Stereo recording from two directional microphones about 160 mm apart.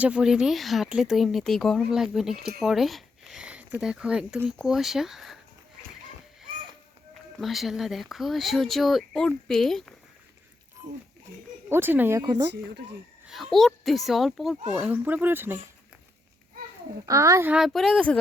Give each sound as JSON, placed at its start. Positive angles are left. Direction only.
{"t": 0.0, "sound": "speech", "side_deg": -5}
{"t": 7.3, "sound": "speech", "side_deg": 0}
{"t": 11.7, "sound": "speech", "side_deg": -15}
{"t": 13.2, "sound": "speech", "side_deg": 0}
{"t": 17.1, "sound": "speech", "side_deg": -20}
{"t": 17.5, "sound": "speech", "side_deg": 0}